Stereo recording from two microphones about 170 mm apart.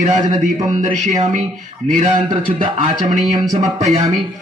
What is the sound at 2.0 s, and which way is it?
A man's voice, 30° right (ahead or behind).